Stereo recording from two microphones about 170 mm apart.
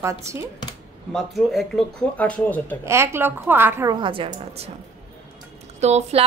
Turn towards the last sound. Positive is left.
turn(degrees=-40)  # may be behind; listen again after turning